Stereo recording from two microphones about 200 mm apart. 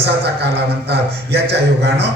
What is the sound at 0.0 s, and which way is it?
A man's voice, 55° right (ahead or behind).